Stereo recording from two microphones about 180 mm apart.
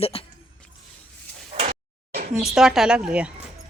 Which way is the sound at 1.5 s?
40° right (ahead or behind).